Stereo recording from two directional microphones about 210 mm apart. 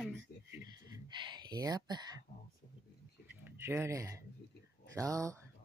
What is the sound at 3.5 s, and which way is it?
Speech, 10° right (ahead or behind).